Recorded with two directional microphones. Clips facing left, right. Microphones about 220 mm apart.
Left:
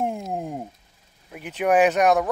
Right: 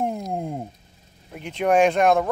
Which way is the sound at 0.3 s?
Centre (ahead or behind).